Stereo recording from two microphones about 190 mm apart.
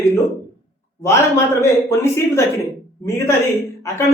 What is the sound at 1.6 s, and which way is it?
Speech, 15° left (ahead or behind).